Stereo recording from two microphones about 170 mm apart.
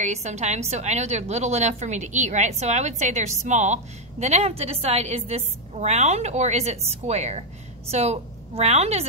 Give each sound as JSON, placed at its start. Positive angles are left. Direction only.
{"t": 0.0, "sound": "a woman's voice", "side_deg": -45}